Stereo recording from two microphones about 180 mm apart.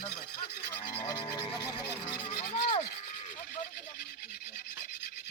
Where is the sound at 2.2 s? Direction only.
35° left (ahead or behind).